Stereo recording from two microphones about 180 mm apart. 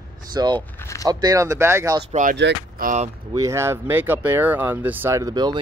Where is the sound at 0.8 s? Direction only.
15° left (ahead or behind).